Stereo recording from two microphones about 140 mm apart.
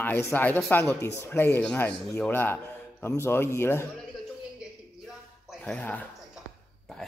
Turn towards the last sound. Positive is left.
turn(degrees=10)  # may be behind; listen again after turning